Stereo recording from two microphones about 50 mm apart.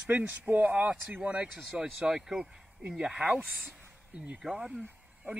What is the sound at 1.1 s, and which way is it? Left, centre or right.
Frog, right.